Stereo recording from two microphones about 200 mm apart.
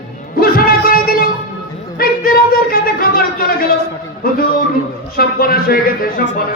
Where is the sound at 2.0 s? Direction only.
45° left (ahead or behind).